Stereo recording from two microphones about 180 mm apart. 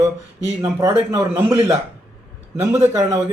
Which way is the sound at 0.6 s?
15° right (ahead or behind).